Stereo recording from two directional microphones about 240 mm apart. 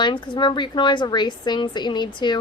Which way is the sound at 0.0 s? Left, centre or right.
Centre.